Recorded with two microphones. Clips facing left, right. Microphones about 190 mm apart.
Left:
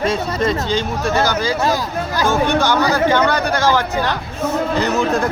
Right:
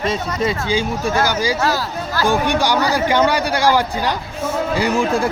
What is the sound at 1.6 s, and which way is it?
Speech, 15° left (ahead or behind).